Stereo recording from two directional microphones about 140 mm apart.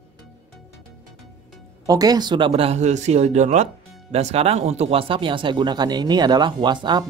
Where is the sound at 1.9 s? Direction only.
25° right (ahead or behind).